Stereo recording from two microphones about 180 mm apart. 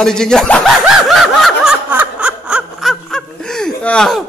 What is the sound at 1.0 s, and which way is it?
Snicker, centre (ahead or behind).